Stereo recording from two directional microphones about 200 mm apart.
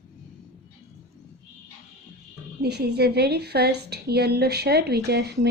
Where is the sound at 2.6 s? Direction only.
55° right (ahead or behind).